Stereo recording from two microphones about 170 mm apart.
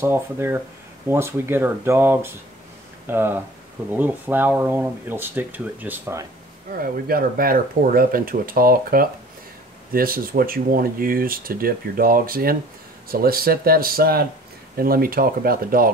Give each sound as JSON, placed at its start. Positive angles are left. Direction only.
{"t": 0.0, "sound": "speech", "side_deg": -15}
{"t": 6.7, "sound": "speech", "side_deg": -60}